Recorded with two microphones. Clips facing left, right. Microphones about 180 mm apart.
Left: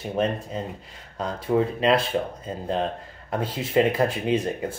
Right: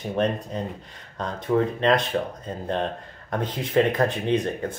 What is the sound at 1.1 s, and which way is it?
Speech, 10° left (ahead or behind).